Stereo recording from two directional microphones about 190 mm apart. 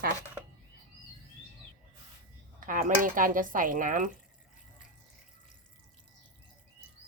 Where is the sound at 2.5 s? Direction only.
45° right (ahead or behind).